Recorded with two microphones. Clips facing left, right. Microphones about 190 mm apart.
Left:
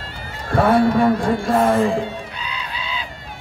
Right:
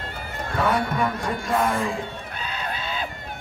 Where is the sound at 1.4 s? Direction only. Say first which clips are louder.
Left 4 dB; 30° left (ahead or behind).